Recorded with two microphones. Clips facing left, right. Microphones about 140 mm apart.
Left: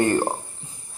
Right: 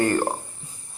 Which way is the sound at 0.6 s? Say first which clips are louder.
Left 1 dB; 25° left (ahead or behind).